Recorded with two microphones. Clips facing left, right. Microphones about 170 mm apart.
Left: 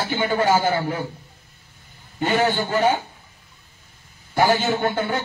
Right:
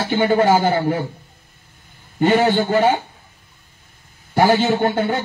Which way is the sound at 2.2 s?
45° right (ahead or behind).